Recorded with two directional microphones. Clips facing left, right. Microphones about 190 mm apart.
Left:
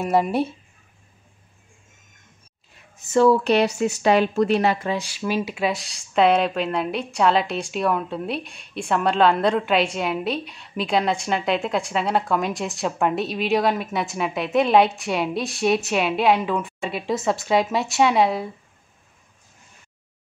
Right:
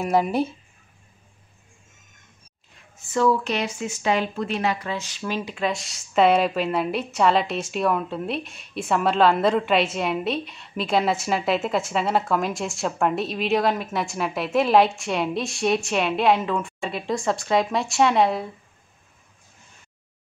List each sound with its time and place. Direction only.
0.0 s speech: centre (ahead or behind)
3.1 s speech: 30° left (ahead or behind)
3.4 s speech: 65° left (ahead or behind)
4.6 s speech: 40° left (ahead or behind)
4.8 s speech: 10° left (ahead or behind)